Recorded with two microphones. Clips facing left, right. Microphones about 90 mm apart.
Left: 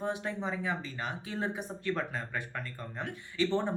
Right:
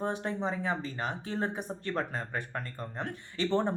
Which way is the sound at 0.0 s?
40° right (ahead or behind).